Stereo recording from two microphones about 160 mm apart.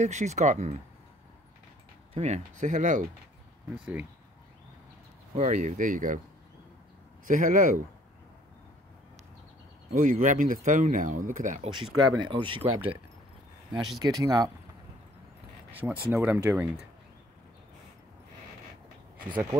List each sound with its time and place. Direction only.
0.0 s speech: 45° right (ahead or behind)
2.1 s speech: 45° right (ahead or behind)
3.7 s speech: 10° right (ahead or behind)
5.3 s speech: 45° right (ahead or behind)
7.2 s speech: 55° right (ahead or behind)
9.9 s speech: 55° right (ahead or behind)
11.7 s speech: 30° right (ahead or behind)
13.7 s speech: 25° right (ahead or behind)
15.7 s speech: 10° right (ahead or behind)